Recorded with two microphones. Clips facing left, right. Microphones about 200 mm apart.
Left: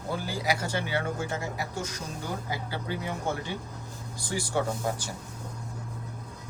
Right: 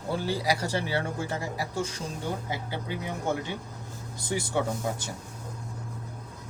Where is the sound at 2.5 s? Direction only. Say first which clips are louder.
Even; 20° right (ahead or behind).